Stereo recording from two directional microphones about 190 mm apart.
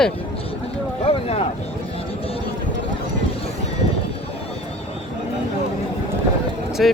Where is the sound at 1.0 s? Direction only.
30° left (ahead or behind).